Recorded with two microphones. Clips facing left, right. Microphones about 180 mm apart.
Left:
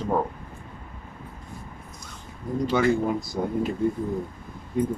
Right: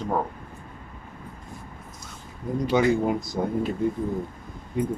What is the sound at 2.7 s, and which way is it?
Speech, 20° right (ahead or behind).